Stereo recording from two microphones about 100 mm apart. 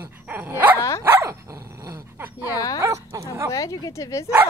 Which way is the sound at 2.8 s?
30° right (ahead or behind).